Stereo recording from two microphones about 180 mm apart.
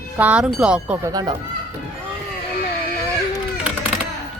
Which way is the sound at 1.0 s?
20° right (ahead or behind).